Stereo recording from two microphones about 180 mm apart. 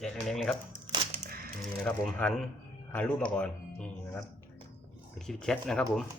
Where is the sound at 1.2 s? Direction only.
55° right (ahead or behind).